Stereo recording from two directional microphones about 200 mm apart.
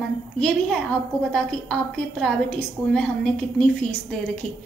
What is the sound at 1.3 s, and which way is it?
A woman's voice, 5° left (ahead or behind).